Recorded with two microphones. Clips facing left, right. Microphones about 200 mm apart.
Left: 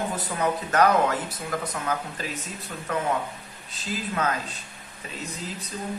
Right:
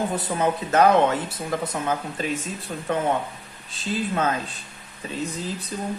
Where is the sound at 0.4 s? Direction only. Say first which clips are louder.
Right 3 dB; 25° right (ahead or behind).